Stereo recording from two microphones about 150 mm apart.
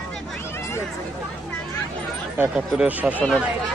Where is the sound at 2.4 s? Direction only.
5° right (ahead or behind).